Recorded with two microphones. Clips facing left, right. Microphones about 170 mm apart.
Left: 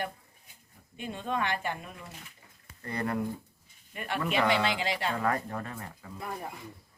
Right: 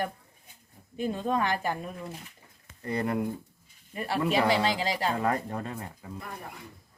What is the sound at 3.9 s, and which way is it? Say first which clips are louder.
A woman's voice: right 3 dB; 35° right (ahead or behind).